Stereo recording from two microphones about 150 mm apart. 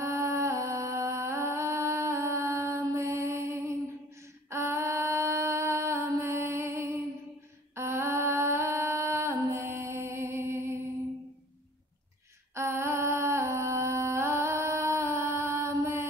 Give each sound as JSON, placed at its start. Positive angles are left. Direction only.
{"t": 0.0, "sound": "music", "side_deg": -20}
{"t": 4.5, "sound": "a sound", "side_deg": -20}
{"t": 12.5, "sound": "humming", "side_deg": -20}